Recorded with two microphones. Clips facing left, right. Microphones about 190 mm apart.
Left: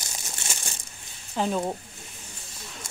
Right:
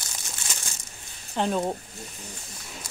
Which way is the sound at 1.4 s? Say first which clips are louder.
Right 1 dB; centre (ahead or behind).